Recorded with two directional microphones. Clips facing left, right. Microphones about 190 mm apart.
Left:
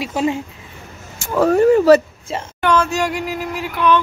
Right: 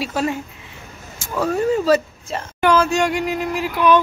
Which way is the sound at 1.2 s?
60° left (ahead or behind).